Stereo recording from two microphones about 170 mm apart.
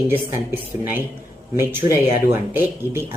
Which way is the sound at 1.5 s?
15° right (ahead or behind).